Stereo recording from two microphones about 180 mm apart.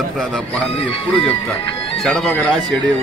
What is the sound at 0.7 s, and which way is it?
Speech, 30° left (ahead or behind).